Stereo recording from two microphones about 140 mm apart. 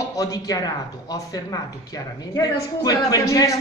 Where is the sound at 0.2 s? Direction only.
25° left (ahead or behind).